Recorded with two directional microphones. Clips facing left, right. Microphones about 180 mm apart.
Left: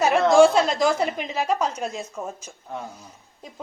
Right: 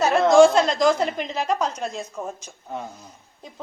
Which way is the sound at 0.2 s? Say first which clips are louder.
Right 2 dB; 5° left (ahead or behind).